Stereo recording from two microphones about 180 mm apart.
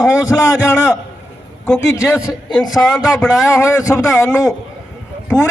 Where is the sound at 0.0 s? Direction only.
20° left (ahead or behind).